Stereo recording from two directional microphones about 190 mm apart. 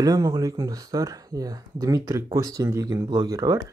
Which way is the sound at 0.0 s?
20° right (ahead or behind).